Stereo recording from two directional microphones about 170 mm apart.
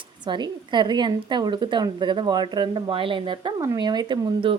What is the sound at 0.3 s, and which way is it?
A woman's voice, 25° right (ahead or behind).